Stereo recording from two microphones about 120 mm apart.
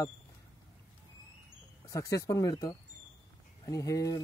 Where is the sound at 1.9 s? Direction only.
25° left (ahead or behind).